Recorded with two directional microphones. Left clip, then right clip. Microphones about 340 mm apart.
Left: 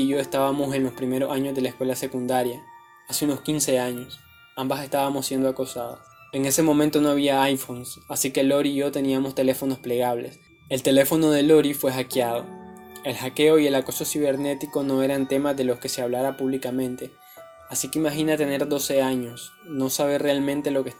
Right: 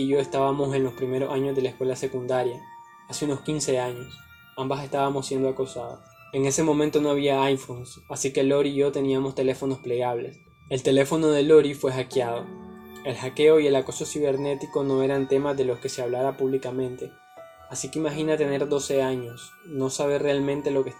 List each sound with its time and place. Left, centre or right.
0.0 s speech: left